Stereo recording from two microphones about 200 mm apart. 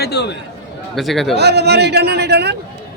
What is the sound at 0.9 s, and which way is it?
Speech, centre (ahead or behind).